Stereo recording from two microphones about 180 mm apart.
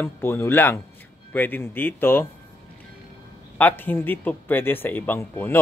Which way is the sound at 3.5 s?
10° left (ahead or behind).